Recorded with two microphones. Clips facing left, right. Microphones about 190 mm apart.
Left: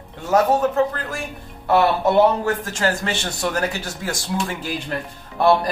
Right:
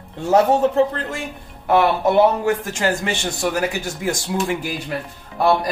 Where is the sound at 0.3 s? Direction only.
30° right (ahead or behind).